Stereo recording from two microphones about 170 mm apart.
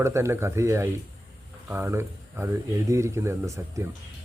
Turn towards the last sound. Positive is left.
turn(degrees=-15)  # may be behind; listen again after turning